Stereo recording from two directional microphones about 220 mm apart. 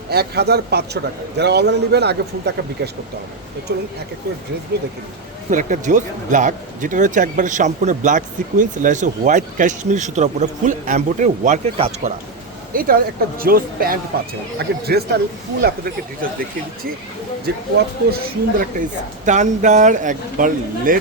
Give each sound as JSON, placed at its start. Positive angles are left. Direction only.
{"t": 0.1, "sound": "a man's voice", "side_deg": -45}
{"t": 5.5, "sound": "speech", "side_deg": -35}
{"t": 12.7, "sound": "a man's voice", "side_deg": -40}
{"t": 17.5, "sound": "a man's voice", "side_deg": -45}